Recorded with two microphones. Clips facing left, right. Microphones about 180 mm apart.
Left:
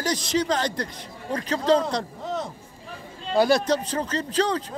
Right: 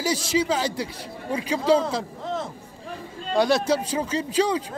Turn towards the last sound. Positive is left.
turn(degrees=-10)  # may be behind; listen again after turning